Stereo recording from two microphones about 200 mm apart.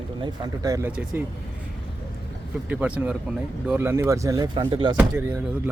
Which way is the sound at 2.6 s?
5° right (ahead or behind).